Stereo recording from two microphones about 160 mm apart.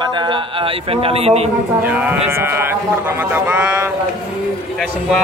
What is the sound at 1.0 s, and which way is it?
Speech, 40° right (ahead or behind).